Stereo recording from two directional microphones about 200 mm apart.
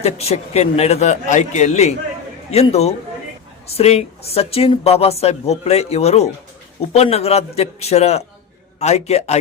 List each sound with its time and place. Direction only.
0.0 s speech: 30° left (ahead or behind)